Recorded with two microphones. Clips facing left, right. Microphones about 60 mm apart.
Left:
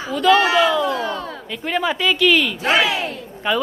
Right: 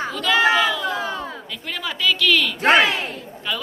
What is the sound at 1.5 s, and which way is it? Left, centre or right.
Speech, left.